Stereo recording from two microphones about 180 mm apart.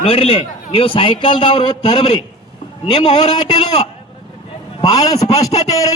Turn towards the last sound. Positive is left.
turn(degrees=20)  # may be behind; listen again after turning